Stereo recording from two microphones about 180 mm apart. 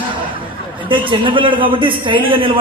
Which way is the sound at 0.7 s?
25° right (ahead or behind).